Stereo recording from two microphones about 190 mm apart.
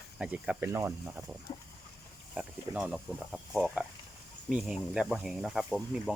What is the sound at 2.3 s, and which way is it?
Speech, 5° right (ahead or behind).